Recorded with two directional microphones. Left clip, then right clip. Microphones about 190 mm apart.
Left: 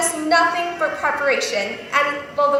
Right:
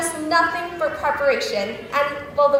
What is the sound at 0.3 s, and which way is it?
A woman's voice, 40° right (ahead or behind).